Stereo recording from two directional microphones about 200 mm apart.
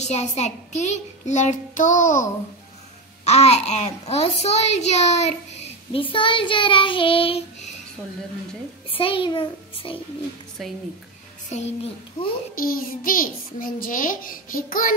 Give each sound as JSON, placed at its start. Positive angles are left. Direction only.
{"t": 0.0, "sound": "a child's voice", "side_deg": 35}
{"t": 3.3, "sound": "a child's voice", "side_deg": 30}
{"t": 8.9, "sound": "a child's voice", "side_deg": 25}
{"t": 10.6, "sound": "speech", "side_deg": 0}
{"t": 11.5, "sound": "a child's voice", "side_deg": 30}
{"t": 12.5, "sound": "a child's voice", "side_deg": 45}